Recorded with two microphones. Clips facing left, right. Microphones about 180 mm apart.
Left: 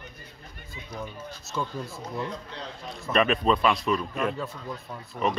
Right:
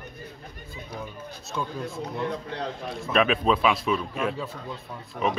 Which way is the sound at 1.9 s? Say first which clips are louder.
Right 4 dB; 60° right (ahead or behind).